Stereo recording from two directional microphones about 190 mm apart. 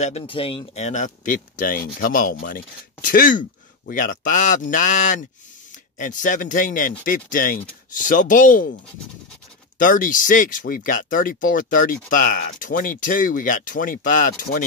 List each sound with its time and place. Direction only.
0.0 s speech: 30° left (ahead or behind)
9.8 s speech: 45° left (ahead or behind)